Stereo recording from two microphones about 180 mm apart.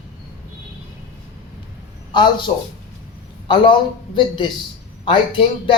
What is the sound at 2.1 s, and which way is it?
Speech, 25° left (ahead or behind).